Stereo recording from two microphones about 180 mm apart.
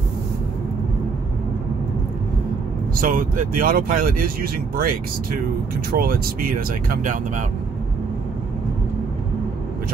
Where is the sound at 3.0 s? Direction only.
50° right (ahead or behind).